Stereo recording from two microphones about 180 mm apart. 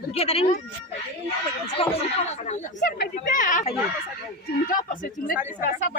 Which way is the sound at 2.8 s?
50° left (ahead or behind).